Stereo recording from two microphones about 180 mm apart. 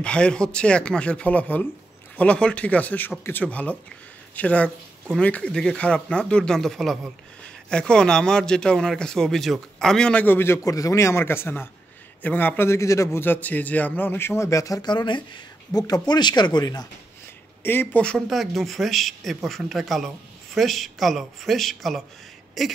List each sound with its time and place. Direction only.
0.0 s a man's voice: 5° left (ahead or behind); by 16.8 s 25° left (ahead or behind)
17.6 s speech: 10° left (ahead or behind)